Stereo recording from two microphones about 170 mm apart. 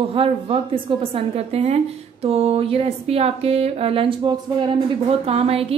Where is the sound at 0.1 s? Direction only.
35° right (ahead or behind).